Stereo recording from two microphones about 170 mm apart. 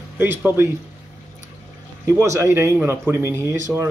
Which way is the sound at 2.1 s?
15° right (ahead or behind).